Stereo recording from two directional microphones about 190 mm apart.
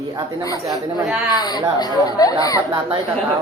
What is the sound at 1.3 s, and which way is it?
A woman's voice, 20° left (ahead or behind).